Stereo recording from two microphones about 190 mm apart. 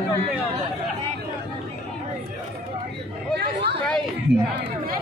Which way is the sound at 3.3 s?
60° right (ahead or behind).